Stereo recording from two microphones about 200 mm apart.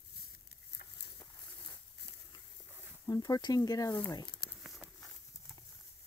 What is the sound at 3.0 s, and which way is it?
Speech, 20° left (ahead or behind).